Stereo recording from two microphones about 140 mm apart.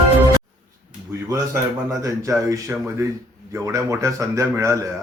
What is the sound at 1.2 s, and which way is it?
A man's voice, 25° right (ahead or behind).